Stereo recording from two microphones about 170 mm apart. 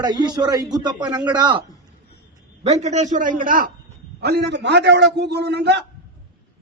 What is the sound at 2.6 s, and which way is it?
A man's voice, 40° right (ahead or behind).